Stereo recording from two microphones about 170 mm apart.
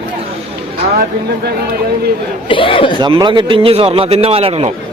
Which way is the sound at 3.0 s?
25° right (ahead or behind).